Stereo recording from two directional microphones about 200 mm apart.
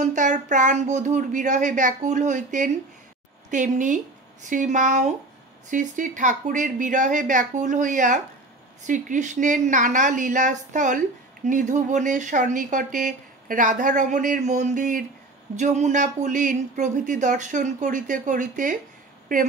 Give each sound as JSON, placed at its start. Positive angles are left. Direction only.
{"t": 0.0, "sound": "speech", "side_deg": -40}